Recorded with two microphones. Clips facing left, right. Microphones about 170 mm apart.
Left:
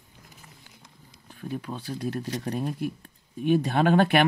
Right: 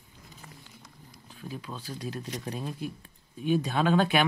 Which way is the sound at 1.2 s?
55° left (ahead or behind).